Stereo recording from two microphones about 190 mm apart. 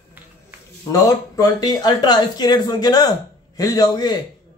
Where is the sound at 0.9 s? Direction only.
20° left (ahead or behind).